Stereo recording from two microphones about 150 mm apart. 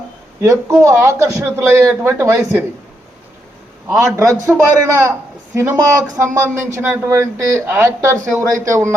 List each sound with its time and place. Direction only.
0.4 s speech: 20° right (ahead or behind)
3.8 s a man's voice: 20° right (ahead or behind)